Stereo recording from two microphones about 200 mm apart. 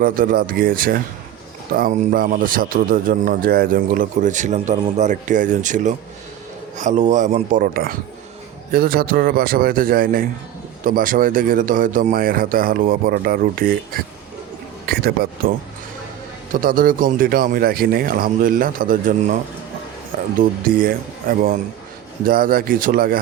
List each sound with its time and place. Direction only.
0.0 s speech: 45° right (ahead or behind)
14.8 s a sound: 50° right (ahead or behind)
16.5 s speech: 45° right (ahead or behind)
20.4 s speech: 45° right (ahead or behind)